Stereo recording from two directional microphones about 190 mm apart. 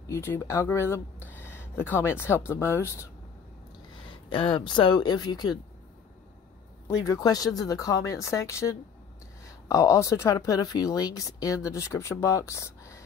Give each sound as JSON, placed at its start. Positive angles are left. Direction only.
{"t": 0.0, "sound": "speech", "side_deg": 15}
{"t": 4.3, "sound": "speech", "side_deg": 25}
{"t": 7.1, "sound": "speech", "side_deg": 20}